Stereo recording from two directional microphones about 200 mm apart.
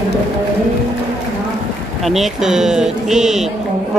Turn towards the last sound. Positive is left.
turn(degrees=0)  # may be behind; listen again after turning